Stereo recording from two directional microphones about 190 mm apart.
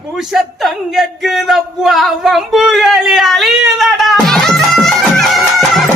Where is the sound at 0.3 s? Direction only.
Centre (ahead or behind).